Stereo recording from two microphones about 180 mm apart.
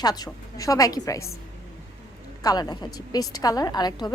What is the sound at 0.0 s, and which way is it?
A woman's voice, 20° left (ahead or behind).